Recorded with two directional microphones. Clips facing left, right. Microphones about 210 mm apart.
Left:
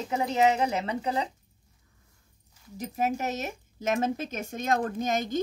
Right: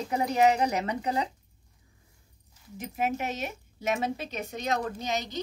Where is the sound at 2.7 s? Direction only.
40° left (ahead or behind).